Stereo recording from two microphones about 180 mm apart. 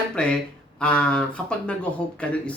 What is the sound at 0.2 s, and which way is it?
Speech, 5° left (ahead or behind).